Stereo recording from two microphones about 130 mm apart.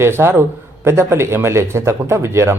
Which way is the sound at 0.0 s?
20° right (ahead or behind).